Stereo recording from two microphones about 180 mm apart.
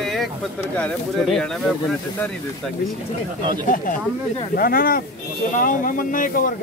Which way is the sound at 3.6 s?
50° left (ahead or behind).